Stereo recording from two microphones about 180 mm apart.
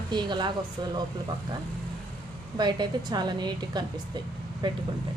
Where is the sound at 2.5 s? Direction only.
25° right (ahead or behind).